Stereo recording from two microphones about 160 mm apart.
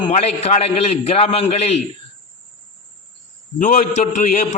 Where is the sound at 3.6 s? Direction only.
55° left (ahead or behind).